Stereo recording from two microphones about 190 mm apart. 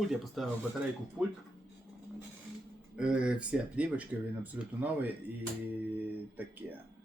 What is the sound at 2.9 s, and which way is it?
Speech, 5° right (ahead or behind).